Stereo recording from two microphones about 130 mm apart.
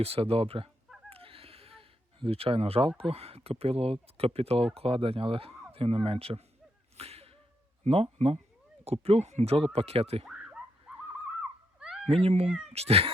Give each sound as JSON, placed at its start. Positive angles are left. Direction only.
{"t": 0.0, "sound": "speech", "side_deg": -50}
{"t": 1.1, "sound": "a sound", "side_deg": -45}
{"t": 3.1, "sound": "speech", "side_deg": -50}
{"t": 6.9, "sound": "a sound", "side_deg": -50}
{"t": 7.9, "sound": "speech", "side_deg": -50}
{"t": 10.2, "sound": "dog", "side_deg": -5}
{"t": 12.0, "sound": "speech", "side_deg": -50}
{"t": 12.5, "sound": "speech", "side_deg": -5}
{"t": 12.7, "sound": "speech", "side_deg": -50}